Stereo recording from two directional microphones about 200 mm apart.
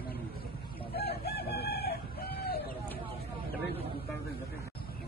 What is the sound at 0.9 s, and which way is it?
Chicken, 50° left (ahead or behind).